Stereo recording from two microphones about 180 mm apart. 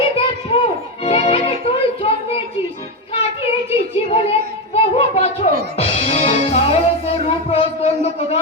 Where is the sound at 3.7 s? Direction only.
35° left (ahead or behind).